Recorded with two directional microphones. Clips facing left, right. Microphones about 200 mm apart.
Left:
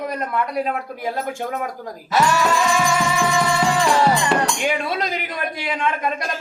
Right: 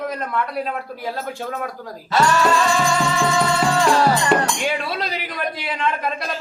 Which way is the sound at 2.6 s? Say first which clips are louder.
Even; 15° left (ahead or behind).